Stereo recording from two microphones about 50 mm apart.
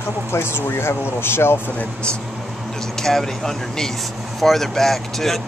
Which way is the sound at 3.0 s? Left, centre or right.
Centre.